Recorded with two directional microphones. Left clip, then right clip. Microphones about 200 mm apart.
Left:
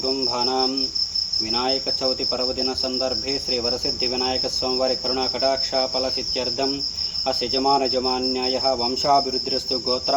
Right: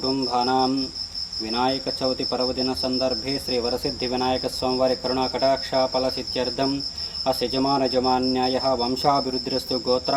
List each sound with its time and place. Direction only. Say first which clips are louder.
0.1 s speech: right 2 dB; 40° right (ahead or behind)
1.5 s cricket: right 2 dB; 45° right (ahead or behind)
7.3 s speech: left 1 dB; 40° right (ahead or behind)